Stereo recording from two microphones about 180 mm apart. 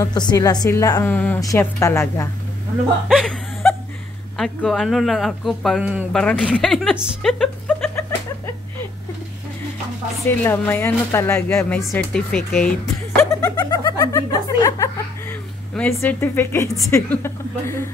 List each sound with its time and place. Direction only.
0.0 s a woman's voice: 25° left (ahead or behind)
3.1 s chuckle: 5° left (ahead or behind)
4.4 s speech: 5° left (ahead or behind)
10.2 s speech: 10° left (ahead or behind)
13.3 s chuckle: 20° left (ahead or behind)
15.7 s speech: 10° left (ahead or behind)